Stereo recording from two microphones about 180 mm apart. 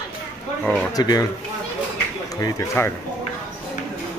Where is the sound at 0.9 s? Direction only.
20° left (ahead or behind).